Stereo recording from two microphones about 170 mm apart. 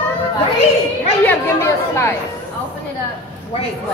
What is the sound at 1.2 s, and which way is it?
Speech, 15° left (ahead or behind).